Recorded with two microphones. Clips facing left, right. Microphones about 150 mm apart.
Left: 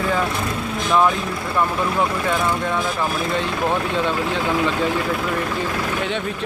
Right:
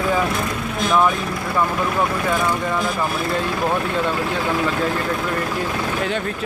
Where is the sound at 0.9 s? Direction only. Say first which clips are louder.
Even; 5° right (ahead or behind).